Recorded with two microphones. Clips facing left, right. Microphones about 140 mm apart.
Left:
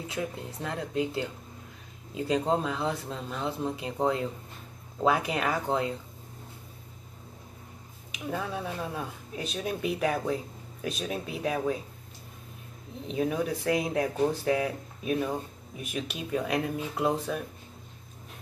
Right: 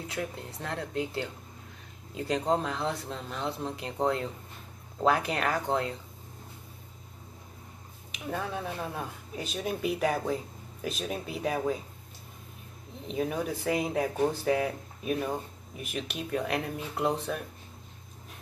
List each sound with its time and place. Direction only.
0.1 s speech: 5° left (ahead or behind)
8.3 s speech: centre (ahead or behind)
13.0 s speech: centre (ahead or behind)